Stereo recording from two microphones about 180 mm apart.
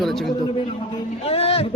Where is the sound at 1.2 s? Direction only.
35° left (ahead or behind).